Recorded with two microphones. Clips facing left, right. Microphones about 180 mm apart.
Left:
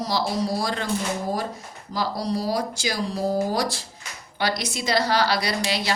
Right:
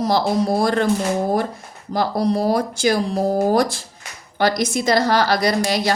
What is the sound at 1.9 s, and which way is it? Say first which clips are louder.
A woman's voice: right 7 dB; 55° right (ahead or behind).